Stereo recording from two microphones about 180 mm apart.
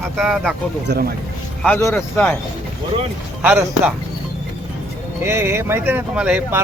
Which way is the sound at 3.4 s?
5° right (ahead or behind).